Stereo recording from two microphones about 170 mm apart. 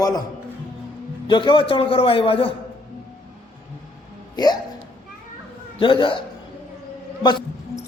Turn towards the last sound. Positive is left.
turn(degrees=25)  # may be behind; listen again after turning